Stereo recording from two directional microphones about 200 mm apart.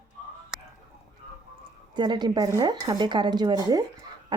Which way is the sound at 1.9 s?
20° right (ahead or behind).